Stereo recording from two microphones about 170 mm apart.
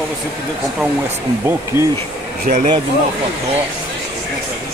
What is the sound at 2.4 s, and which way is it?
Speech, 50° right (ahead or behind).